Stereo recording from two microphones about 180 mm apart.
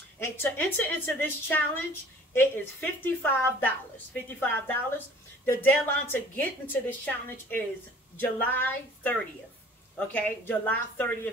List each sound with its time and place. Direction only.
0.2 s a woman's voice: 10° left (ahead or behind)